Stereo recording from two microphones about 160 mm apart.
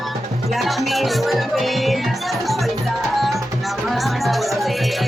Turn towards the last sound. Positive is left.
turn(degrees=0)  # may be behind; listen again after turning